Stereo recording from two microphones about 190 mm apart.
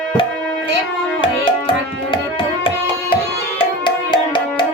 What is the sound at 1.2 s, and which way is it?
Music, 25° left (ahead or behind).